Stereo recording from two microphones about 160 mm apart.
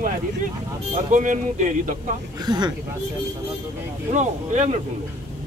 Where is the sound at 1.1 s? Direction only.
55° right (ahead or behind).